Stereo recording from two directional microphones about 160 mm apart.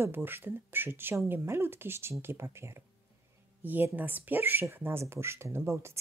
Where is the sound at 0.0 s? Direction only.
15° right (ahead or behind).